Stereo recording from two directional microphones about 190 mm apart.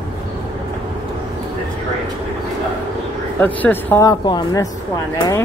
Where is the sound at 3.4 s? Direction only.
10° left (ahead or behind).